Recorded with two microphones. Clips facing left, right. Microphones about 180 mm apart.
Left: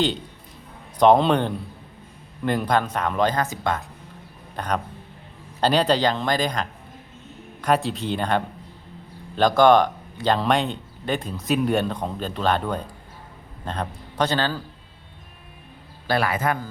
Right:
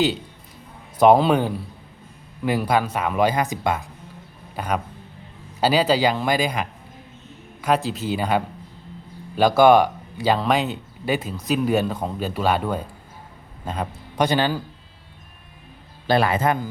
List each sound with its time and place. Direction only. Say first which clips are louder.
0.9 s a man's voice: right 1 dB; 5° right (ahead or behind)
16.0 s a man's voice: right 3 dB; 25° right (ahead or behind)